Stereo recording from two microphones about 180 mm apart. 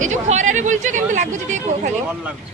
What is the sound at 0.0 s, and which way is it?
Speech, 40° right (ahead or behind).